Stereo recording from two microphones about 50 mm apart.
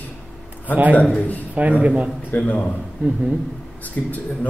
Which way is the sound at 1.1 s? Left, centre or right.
Left.